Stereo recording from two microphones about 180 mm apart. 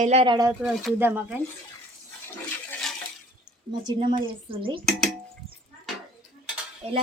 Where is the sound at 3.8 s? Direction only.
25° right (ahead or behind).